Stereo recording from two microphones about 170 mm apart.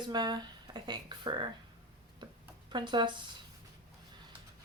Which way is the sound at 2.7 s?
25° right (ahead or behind).